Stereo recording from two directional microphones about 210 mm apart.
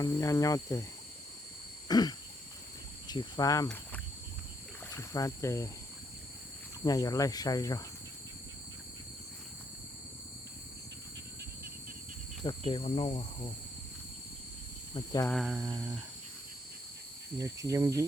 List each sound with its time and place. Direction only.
0.0 s speech: 15° left (ahead or behind)
1.9 s cricket: 20° left (ahead or behind)
3.1 s speech: 20° left (ahead or behind)
4.9 s speech: 15° left (ahead or behind)
6.8 s speech: 15° left (ahead or behind)
12.4 s cricket: 25° left (ahead or behind)
14.9 s speech: 15° left (ahead or behind)
15.3 s mantra: centre (ahead or behind)
17.3 s speech: 15° right (ahead or behind)